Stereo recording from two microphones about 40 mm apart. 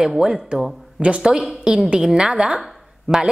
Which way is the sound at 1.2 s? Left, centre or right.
Centre.